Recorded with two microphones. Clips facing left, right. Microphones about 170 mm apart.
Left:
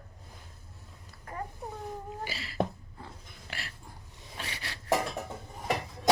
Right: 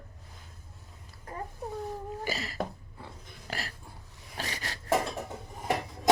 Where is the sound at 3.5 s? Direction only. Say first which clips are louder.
Right 6 dB; 40° right (ahead or behind).